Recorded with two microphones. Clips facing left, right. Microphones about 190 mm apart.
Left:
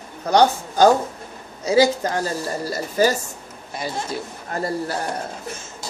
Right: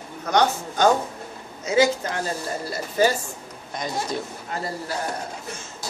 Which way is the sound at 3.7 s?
5° left (ahead or behind).